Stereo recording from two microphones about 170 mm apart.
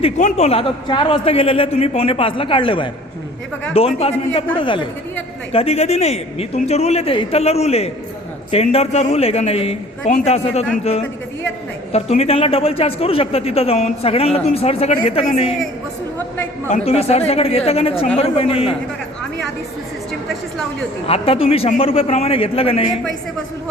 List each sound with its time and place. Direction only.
0.2 s a man's voice: 45° left (ahead or behind)
11.9 s a man's voice: 35° left (ahead or behind)
16.6 s a man's voice: 40° left (ahead or behind)
21.1 s a man's voice: 35° left (ahead or behind)